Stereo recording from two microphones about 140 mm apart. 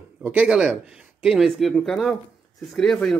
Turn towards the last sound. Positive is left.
turn(degrees=5)  # may be behind; listen again after turning